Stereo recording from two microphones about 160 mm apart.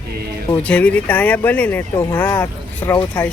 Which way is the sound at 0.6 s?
10° left (ahead or behind).